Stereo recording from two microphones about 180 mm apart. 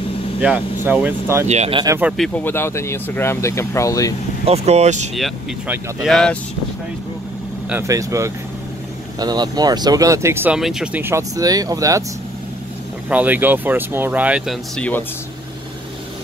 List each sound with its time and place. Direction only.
0.4 s speech: 5° right (ahead or behind)
1.5 s speech: 35° right (ahead or behind)
2.0 s speech: 5° right (ahead or behind); by 4.1 s 20° left (ahead or behind)
4.5 s speech: 35° right (ahead or behind)
5.1 s speech: centre (ahead or behind)
7.7 s speech: 15° right (ahead or behind)
13.1 s speech: 10° right (ahead or behind); by 15.0 s 10° left (ahead or behind)